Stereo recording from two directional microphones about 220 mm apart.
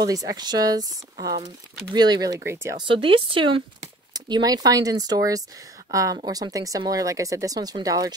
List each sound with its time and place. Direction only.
0.0 s speech: 15° right (ahead or behind)
2.9 s speech: 25° right (ahead or behind)